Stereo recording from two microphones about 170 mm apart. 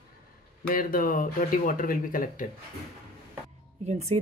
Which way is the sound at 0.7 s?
55° left (ahead or behind).